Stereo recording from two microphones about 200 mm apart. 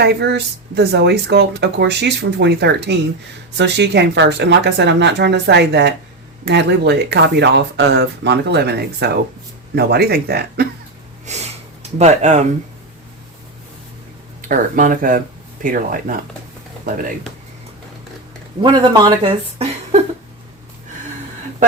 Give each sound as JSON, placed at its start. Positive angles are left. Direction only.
{"t": 0.0, "sound": "speech", "side_deg": -55}
{"t": 11.3, "sound": "gasp", "side_deg": -35}
{"t": 14.4, "sound": "speech", "side_deg": -40}
{"t": 18.6, "sound": "speech", "side_deg": -20}